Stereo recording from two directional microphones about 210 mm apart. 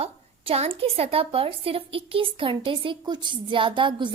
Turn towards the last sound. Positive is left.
turn(degrees=-25)  # may be behind; listen again after turning